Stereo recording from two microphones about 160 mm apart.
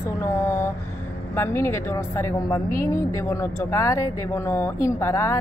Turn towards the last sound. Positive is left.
turn(degrees=15)  # may be behind; listen again after turning